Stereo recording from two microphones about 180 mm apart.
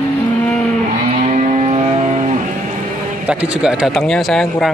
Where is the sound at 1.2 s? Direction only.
40° right (ahead or behind).